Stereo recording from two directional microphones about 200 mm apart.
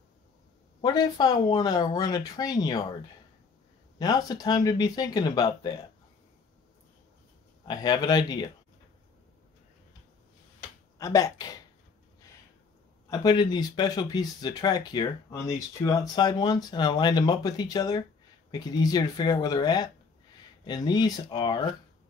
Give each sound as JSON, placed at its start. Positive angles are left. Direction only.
{"t": 0.7, "sound": "speech", "side_deg": 20}
{"t": 4.0, "sound": "speech", "side_deg": 20}
{"t": 7.6, "sound": "speech", "side_deg": 20}
{"t": 11.0, "sound": "speech", "side_deg": 15}
{"t": 13.1, "sound": "speech", "side_deg": 20}